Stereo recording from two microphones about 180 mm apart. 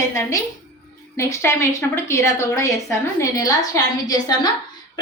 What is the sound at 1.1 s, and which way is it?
A woman's voice, 15° left (ahead or behind).